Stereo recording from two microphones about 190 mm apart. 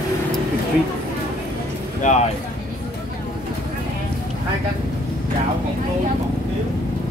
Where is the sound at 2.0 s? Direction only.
40° left (ahead or behind).